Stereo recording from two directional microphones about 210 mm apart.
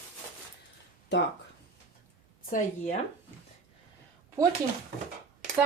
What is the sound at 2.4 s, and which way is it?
Speech, 40° left (ahead or behind).